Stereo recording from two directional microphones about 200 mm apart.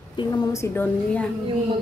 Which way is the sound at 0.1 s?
20° left (ahead or behind).